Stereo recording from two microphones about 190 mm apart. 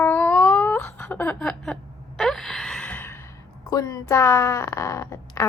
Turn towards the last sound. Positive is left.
turn(degrees=15)  # may be behind; listen again after turning